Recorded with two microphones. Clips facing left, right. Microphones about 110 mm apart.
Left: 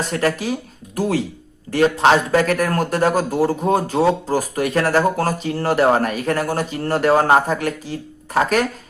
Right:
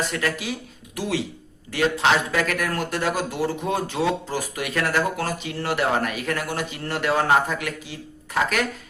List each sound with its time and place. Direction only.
0.1 s a man's voice: 40° left (ahead or behind)